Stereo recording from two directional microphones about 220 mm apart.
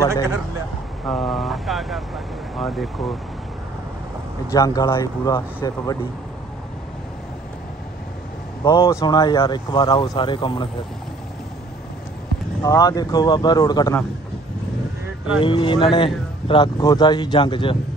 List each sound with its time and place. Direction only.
1.0 s speech: centre (ahead or behind)
4.5 s speech: 15° left (ahead or behind)
8.6 s speech: 15° left (ahead or behind)
12.6 s speech: 15° left (ahead or behind)
15.4 s speech: 20° left (ahead or behind)